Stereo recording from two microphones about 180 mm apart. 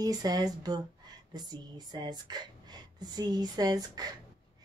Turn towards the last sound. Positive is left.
turn(degrees=-20)  # may be behind; listen again after turning